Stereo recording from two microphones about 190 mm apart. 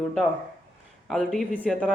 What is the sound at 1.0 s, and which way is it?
Speech, centre (ahead or behind).